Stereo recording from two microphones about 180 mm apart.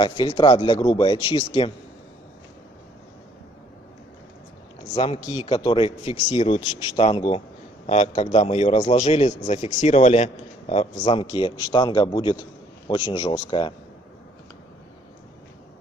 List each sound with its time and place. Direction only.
0.0 s speech: 25° left (ahead or behind)
4.9 s a man's voice: 30° left (ahead or behind)